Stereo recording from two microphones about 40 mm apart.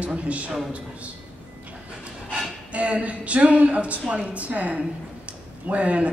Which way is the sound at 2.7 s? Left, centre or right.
Right.